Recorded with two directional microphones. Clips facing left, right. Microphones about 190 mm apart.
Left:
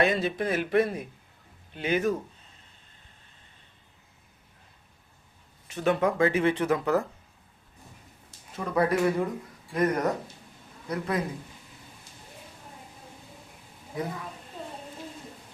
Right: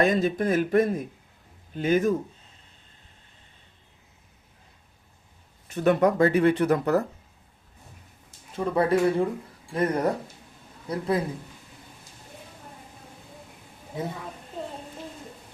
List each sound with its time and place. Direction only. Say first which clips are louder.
0.0 s speech: right 3 dB; 45° right (ahead or behind)
5.7 s speech: right 4 dB; 45° right (ahead or behind)
8.5 s speech: right 3 dB; 30° right (ahead or behind)